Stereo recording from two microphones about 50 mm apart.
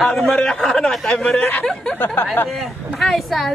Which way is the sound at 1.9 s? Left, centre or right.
Left.